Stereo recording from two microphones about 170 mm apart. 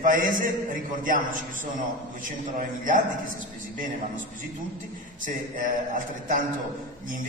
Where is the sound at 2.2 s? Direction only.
50° right (ahead or behind).